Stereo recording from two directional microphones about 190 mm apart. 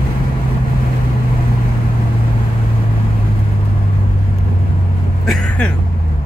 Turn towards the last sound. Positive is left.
turn(degrees=5)  # may be behind; listen again after turning